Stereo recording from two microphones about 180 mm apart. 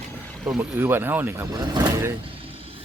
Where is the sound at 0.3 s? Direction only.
Centre (ahead or behind); by 2.1 s 20° right (ahead or behind).